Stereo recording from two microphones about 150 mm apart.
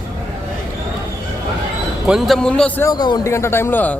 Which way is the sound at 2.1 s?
Centre (ahead or behind).